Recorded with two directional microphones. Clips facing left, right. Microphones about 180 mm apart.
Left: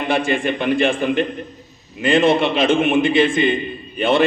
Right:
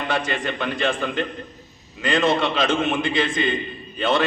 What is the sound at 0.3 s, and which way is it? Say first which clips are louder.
A man's voice: left 7 dB; 25° left (ahead or behind).